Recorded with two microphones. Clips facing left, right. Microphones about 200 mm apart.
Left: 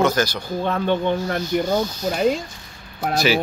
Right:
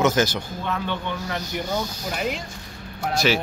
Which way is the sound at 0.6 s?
45° left (ahead or behind).